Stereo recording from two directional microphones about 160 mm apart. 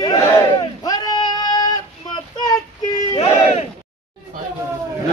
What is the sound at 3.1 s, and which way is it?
Crowd, 40° left (ahead or behind).